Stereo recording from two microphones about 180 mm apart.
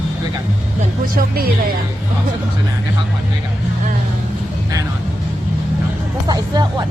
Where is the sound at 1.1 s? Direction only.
60° right (ahead or behind).